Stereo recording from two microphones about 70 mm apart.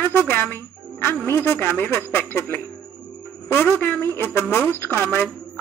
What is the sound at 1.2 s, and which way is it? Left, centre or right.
Speech, left.